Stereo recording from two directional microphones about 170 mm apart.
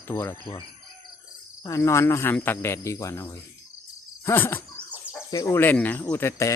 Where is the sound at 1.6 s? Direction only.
20° left (ahead or behind).